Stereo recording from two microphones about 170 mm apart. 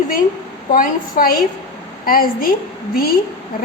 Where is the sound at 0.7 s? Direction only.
55° left (ahead or behind).